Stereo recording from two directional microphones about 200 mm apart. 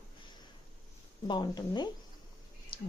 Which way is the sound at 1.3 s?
20° left (ahead or behind).